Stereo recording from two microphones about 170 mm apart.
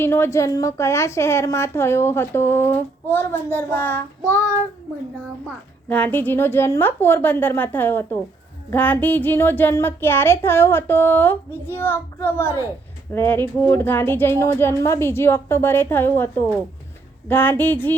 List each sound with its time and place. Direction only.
0.0 s a woman's voice: 15° left (ahead or behind)
5.9 s a woman's voice: 10° left (ahead or behind)